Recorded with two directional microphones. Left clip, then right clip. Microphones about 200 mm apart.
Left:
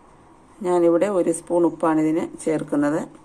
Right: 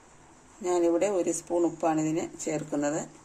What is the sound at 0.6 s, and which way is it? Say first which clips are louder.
Speech: left 7 dB; 10° left (ahead or behind).